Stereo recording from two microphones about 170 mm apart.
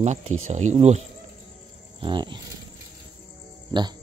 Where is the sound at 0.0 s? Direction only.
40° right (ahead or behind).